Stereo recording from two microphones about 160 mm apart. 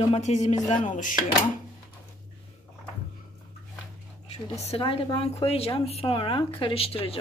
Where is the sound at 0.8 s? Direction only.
55° left (ahead or behind).